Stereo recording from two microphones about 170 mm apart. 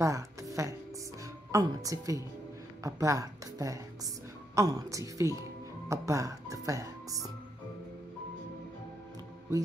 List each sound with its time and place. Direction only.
0.0 s a woman's voice: 20° right (ahead or behind)